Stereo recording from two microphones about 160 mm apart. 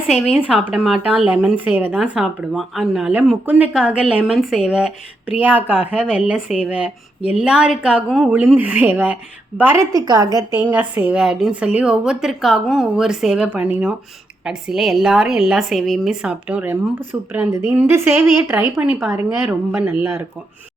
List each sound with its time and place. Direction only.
0.1 s a woman's voice: 5° right (ahead or behind); by 10.4 s 25° right (ahead or behind)
10.6 s a woman's voice: 10° right (ahead or behind)